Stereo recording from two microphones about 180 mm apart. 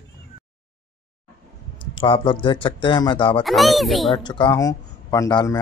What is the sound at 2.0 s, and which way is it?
Speech, 30° left (ahead or behind).